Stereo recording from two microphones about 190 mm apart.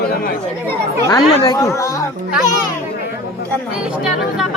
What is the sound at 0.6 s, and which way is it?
Speech, 15° left (ahead or behind).